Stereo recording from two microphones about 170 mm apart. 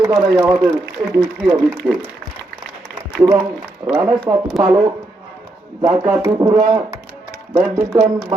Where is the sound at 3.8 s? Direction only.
5° right (ahead or behind).